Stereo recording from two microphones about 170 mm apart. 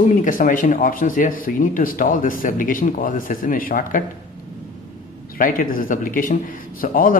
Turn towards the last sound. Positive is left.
turn(degrees=55)  # may be behind; listen again after turning